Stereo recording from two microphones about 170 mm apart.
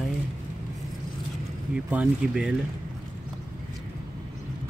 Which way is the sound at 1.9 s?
5° right (ahead or behind).